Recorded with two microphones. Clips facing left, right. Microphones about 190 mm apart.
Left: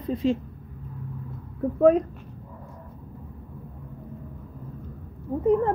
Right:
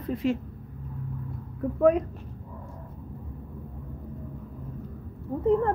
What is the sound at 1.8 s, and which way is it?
Speech, 30° left (ahead or behind).